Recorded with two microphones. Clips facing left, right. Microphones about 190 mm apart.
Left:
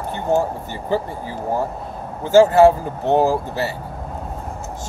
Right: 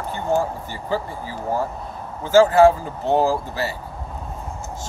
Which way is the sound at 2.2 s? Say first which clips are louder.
Left 2 dB; 20° left (ahead or behind).